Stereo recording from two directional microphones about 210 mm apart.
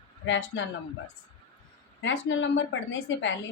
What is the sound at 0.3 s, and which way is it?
Speech, 65° left (ahead or behind).